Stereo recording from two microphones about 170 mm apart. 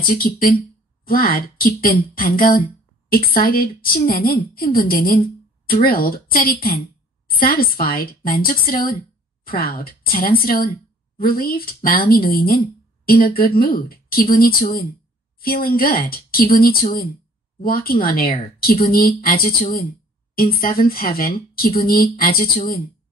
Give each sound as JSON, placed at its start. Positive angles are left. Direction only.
{"t": 0.0, "sound": "speech", "side_deg": 60}